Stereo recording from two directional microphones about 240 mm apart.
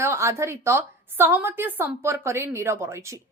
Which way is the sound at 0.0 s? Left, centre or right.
Centre.